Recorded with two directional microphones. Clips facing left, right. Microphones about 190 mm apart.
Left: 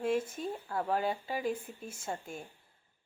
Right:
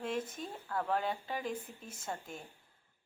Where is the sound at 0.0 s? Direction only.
10° left (ahead or behind).